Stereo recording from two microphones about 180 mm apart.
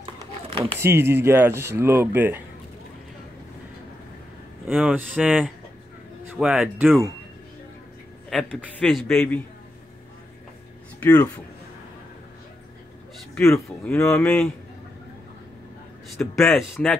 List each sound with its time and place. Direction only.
0.0 s a sound: 30° right (ahead or behind)
0.7 s speech: 15° right (ahead or behind)
4.6 s a man's voice: 10° right (ahead or behind)
8.3 s a man's voice: 5° left (ahead or behind)
13.3 s a man's voice: 15° left (ahead or behind)
16.4 s a man's voice: centre (ahead or behind)